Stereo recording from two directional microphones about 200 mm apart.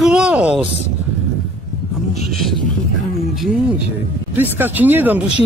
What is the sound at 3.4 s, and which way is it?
A man's voice, 5° right (ahead or behind).